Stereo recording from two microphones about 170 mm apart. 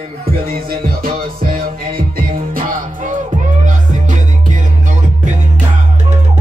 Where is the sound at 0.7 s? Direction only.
60° right (ahead or behind).